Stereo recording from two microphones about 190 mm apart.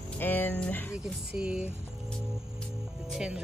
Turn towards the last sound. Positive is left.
turn(degrees=-5)  # may be behind; listen again after turning